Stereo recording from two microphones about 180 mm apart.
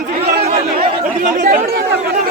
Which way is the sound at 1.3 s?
45° right (ahead or behind).